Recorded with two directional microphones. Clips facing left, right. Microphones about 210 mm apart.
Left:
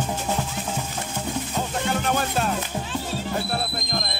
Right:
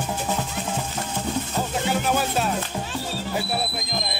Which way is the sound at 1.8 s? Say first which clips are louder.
Right 1 dB; 5° right (ahead or behind).